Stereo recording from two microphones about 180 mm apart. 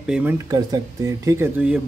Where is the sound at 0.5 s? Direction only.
20° right (ahead or behind).